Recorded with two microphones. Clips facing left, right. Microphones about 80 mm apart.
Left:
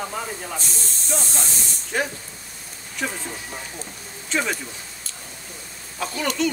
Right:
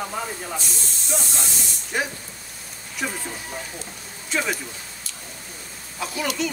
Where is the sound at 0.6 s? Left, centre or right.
Left.